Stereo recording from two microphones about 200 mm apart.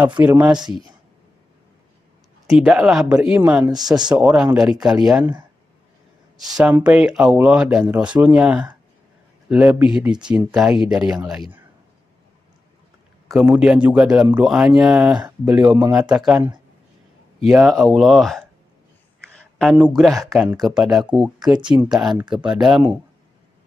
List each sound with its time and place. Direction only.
0.2 s a man's voice: 5° right (ahead or behind)
2.4 s speech: centre (ahead or behind)
6.3 s a man's voice: 5° right (ahead or behind)
13.3 s a man's voice: 5° right (ahead or behind)
19.2 s a sound: centre (ahead or behind)
20.3 s speech: 10° right (ahead or behind)
21.5 s speech: 20° right (ahead or behind)
22.3 s speech: 5° right (ahead or behind)